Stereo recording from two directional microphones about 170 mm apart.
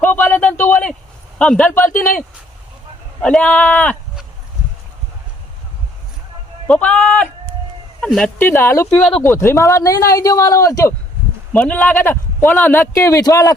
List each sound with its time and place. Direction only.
0.0 s a sound: 10° left (ahead or behind)
1.4 s speech: 5° left (ahead or behind)
3.2 s speech: 5° left (ahead or behind)
6.7 s speech: 5° left (ahead or behind)
8.9 s speech: 5° left (ahead or behind)
9.2 s speech: 15° left (ahead or behind)